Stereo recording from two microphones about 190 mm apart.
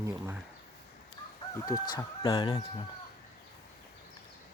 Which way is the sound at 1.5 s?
20° left (ahead or behind).